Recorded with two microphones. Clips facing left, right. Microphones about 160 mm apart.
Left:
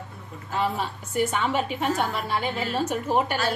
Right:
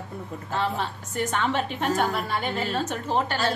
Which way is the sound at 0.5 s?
10° left (ahead or behind).